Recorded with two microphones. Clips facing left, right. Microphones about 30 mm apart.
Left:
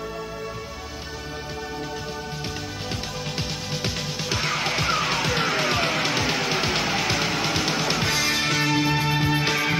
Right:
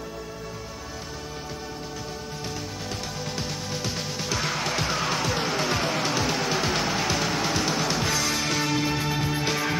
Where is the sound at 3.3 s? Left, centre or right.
Left.